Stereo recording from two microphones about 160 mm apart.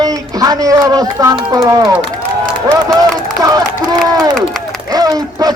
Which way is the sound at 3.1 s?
20° right (ahead or behind).